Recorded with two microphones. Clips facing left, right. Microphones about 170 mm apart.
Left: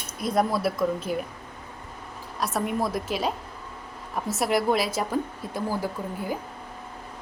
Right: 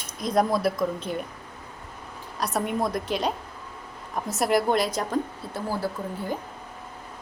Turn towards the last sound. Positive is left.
turn(degrees=10)  # may be behind; listen again after turning